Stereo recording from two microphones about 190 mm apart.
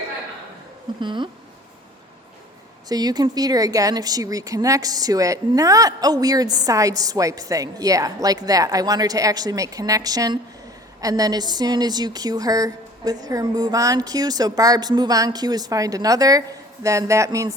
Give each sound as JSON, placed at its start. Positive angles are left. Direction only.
{"t": 1.0, "sound": "speech", "side_deg": -25}
{"t": 2.9, "sound": "speech", "side_deg": -20}